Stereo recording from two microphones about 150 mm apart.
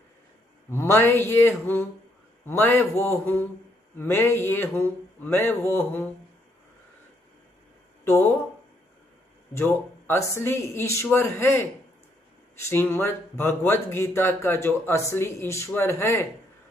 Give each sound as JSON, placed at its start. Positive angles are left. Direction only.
{"t": 0.7, "sound": "speech", "side_deg": 15}
{"t": 9.5, "sound": "speech", "side_deg": 15}
{"t": 12.6, "sound": "speech", "side_deg": 15}